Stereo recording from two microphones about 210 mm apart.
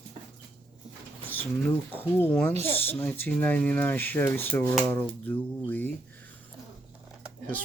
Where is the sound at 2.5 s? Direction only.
30° right (ahead or behind).